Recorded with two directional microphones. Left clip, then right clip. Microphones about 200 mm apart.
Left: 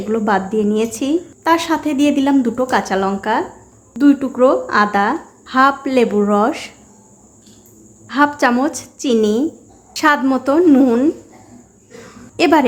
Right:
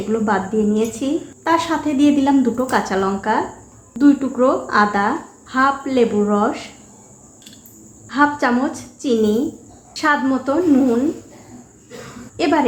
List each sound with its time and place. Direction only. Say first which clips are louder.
0.1 s a woman's voice: left 3 dB; 30° left (ahead or behind)
8.0 s a woman's voice: left 2 dB; 25° left (ahead or behind)
12.4 s a woman's voice: left 4 dB; 35° left (ahead or behind)